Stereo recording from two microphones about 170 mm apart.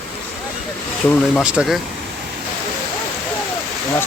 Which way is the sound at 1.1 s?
10° left (ahead or behind).